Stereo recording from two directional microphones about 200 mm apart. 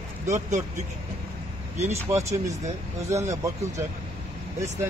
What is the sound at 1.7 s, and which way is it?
Speech, 35° right (ahead or behind).